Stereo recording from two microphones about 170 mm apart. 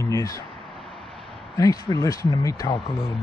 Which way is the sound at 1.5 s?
20° left (ahead or behind).